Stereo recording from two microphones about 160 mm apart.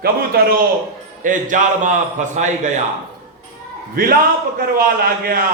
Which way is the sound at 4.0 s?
60° right (ahead or behind).